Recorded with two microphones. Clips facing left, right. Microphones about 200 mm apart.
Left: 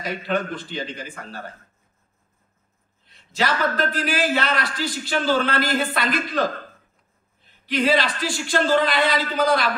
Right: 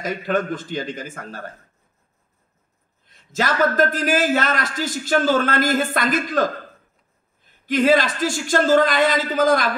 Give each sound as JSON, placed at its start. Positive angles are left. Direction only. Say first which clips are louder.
{"t": 0.0, "sound": "a man's voice", "louder": "right 3 dB", "side_deg": -45}
{"t": 3.1, "sound": "a man's voice", "louder": "right 1 dB", "side_deg": -45}